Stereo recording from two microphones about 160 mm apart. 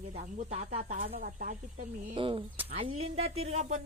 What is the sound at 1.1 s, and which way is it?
Speech, 55° right (ahead or behind).